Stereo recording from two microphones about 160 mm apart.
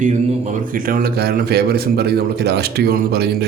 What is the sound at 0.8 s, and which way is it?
A man's voice, 65° right (ahead or behind).